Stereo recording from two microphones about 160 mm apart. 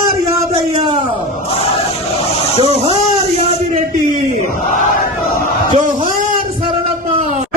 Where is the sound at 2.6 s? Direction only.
35° right (ahead or behind).